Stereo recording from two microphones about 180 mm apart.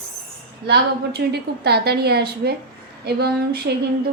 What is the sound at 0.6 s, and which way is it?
A woman's voice, 65° right (ahead or behind).